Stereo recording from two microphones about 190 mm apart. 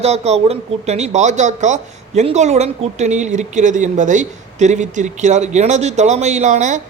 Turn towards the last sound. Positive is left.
turn(degrees=-40)  # may be behind; listen again after turning